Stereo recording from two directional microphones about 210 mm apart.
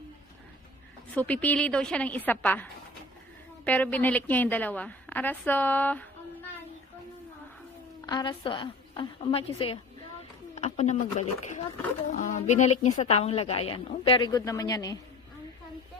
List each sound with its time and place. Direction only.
1.1 s a woman's voice: 5° left (ahead or behind)
8.1 s a woman's voice: 20° left (ahead or behind)